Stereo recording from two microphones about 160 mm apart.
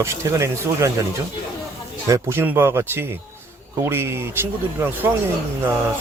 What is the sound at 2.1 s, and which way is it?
Speech, 15° right (ahead or behind).